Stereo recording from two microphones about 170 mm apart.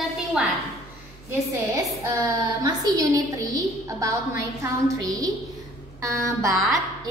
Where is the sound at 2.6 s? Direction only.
20° right (ahead or behind).